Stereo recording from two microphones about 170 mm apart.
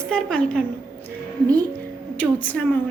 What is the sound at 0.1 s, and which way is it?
Speech, 5° left (ahead or behind).